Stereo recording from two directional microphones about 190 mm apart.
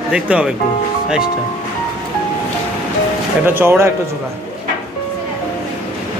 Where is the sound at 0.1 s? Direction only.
5° right (ahead or behind).